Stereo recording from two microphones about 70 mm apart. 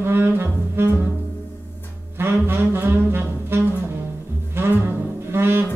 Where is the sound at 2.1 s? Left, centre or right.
Right.